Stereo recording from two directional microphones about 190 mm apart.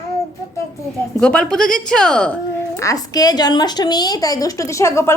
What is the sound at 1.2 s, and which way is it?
A woman's voice, 5° left (ahead or behind).